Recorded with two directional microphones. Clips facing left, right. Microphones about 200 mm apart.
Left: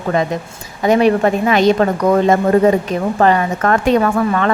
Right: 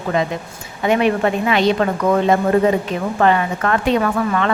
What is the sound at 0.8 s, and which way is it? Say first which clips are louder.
A woman's voice: left 4 dB; 40° left (ahead or behind).